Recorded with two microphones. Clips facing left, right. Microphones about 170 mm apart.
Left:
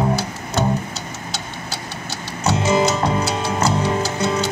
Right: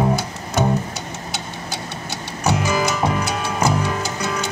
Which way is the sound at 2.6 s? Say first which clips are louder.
Left 6 dB; 25° left (ahead or behind).